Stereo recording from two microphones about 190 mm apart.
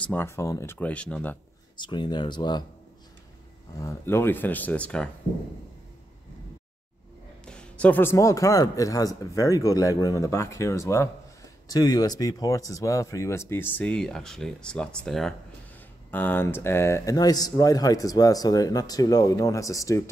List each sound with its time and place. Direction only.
0.0 s speech: 10° left (ahead or behind)
1.8 s speech: 25° left (ahead or behind)
3.8 s speech: 10° left (ahead or behind)
7.4 s speech: 5° left (ahead or behind)